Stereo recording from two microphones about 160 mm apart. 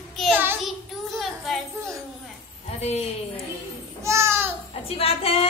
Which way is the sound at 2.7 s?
40° left (ahead or behind).